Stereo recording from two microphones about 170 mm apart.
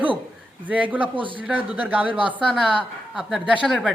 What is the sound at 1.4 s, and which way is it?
Speech, 5° right (ahead or behind).